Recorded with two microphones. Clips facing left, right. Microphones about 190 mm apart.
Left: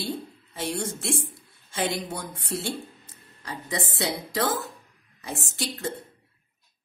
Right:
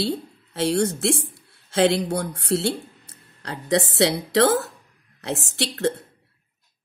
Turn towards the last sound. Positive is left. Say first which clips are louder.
# right 8 dB
turn(degrees=-75)  # may be behind; listen again after turning